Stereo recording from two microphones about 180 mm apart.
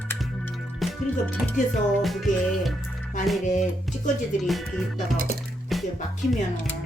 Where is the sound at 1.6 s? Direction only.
45° left (ahead or behind).